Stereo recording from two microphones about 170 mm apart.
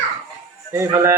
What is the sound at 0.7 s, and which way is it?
Speech, 15° right (ahead or behind).